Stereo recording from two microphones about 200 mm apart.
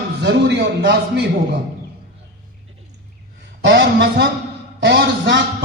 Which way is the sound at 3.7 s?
60° right (ahead or behind).